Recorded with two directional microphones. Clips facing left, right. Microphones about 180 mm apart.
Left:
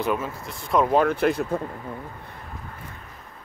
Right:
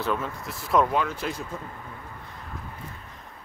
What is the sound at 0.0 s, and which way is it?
Speech, 10° left (ahead or behind).